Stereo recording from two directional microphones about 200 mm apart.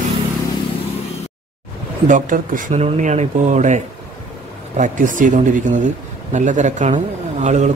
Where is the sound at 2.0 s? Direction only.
40° right (ahead or behind).